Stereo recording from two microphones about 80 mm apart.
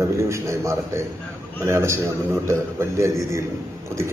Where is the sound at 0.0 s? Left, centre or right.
Right.